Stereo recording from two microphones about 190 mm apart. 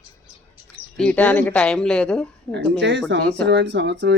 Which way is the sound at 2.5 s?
65° right (ahead or behind).